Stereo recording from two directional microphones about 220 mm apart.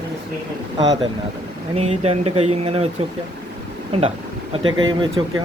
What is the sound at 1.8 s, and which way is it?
Speech, 30° right (ahead or behind).